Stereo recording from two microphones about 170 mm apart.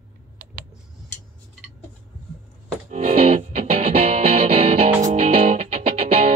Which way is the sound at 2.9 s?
40° right (ahead or behind).